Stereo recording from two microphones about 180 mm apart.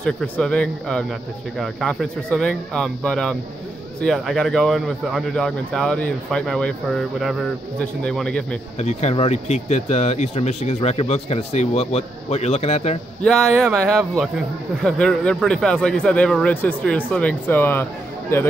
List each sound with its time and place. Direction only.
0.0 s speech: 5° left (ahead or behind)
8.7 s speech: 35° left (ahead or behind)
13.2 s speech: 5° left (ahead or behind)